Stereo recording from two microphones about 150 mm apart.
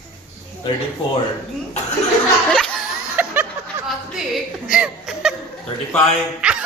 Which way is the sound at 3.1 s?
10° right (ahead or behind).